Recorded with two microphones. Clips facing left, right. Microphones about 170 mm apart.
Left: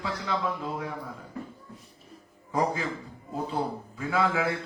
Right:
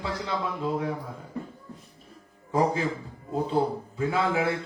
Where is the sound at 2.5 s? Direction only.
30° right (ahead or behind).